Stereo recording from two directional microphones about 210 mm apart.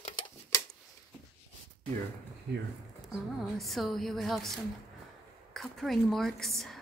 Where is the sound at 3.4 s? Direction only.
Centre (ahead or behind).